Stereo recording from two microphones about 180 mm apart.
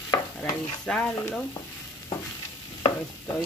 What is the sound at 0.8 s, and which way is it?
Speech, 5° left (ahead or behind).